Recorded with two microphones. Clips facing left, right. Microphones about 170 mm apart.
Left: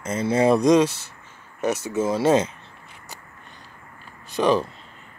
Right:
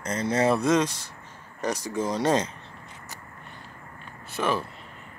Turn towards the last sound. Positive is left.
turn(degrees=20)  # may be behind; listen again after turning